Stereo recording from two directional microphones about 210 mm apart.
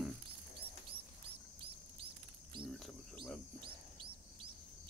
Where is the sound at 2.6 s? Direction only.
Centre (ahead or behind).